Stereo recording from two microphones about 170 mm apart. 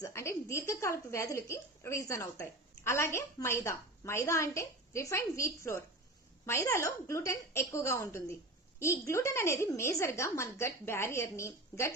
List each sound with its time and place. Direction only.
0.0 s a woman's voice: 15° left (ahead or behind)